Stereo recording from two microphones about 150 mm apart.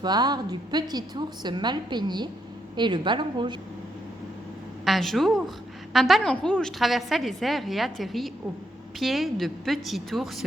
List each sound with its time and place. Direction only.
0.0 s a woman's voice: 25° right (ahead or behind)
4.9 s a woman's voice: centre (ahead or behind)